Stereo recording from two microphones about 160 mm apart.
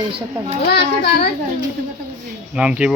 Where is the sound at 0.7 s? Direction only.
85° left.